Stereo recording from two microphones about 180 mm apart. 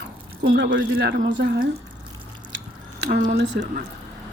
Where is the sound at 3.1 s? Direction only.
50° right (ahead or behind).